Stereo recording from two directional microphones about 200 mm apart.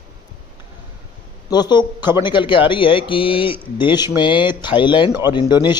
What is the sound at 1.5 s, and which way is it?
A man's voice, 20° left (ahead or behind).